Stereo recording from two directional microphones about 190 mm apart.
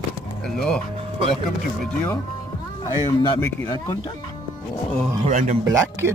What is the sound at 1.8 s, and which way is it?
Speech, 10° left (ahead or behind).